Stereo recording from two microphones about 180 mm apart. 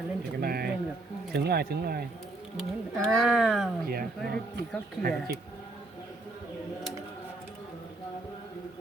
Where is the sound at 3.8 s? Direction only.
60° right (ahead or behind).